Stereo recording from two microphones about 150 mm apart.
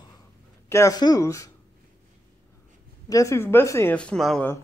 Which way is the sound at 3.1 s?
20° left (ahead or behind).